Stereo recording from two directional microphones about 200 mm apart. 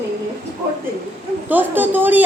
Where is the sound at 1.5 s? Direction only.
10° right (ahead or behind).